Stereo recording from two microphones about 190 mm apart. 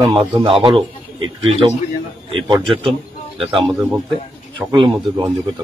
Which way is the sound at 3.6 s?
Centre (ahead or behind).